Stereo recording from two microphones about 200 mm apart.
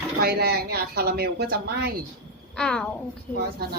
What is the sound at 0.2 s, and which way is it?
Speech, 55° right (ahead or behind).